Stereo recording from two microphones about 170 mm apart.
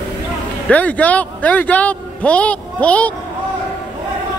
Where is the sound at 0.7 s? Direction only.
10° left (ahead or behind).